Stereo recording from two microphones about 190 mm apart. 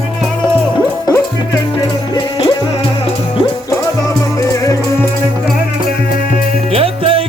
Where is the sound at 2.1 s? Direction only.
25° left (ahead or behind).